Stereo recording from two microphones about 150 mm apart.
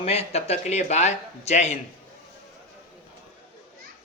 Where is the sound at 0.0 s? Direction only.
45° left (ahead or behind).